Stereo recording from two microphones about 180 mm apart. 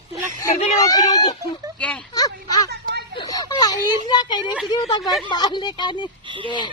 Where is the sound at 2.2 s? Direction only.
20° left (ahead or behind).